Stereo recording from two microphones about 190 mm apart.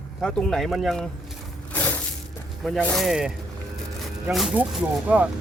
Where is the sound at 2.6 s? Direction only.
5° left (ahead or behind).